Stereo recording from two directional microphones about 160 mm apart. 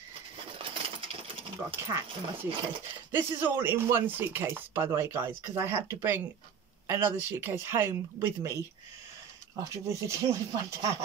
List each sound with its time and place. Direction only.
0.6 s sewing machine: 35° right (ahead or behind)
1.8 s speech: 15° right (ahead or behind)
3.1 s speech: 15° right (ahead or behind)
9.6 s speech: 20° right (ahead or behind)